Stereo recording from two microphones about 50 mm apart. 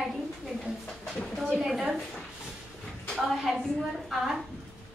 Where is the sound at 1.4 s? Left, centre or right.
Centre.